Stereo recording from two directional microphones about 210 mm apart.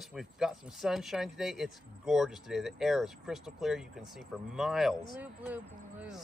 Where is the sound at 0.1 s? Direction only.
Centre (ahead or behind).